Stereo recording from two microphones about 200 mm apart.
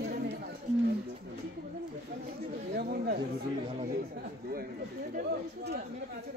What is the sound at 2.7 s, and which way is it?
Chatter, 50° right (ahead or behind).